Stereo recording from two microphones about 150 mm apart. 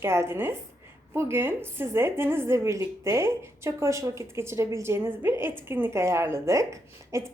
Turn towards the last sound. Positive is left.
turn(degrees=-20)  # may be behind; listen again after turning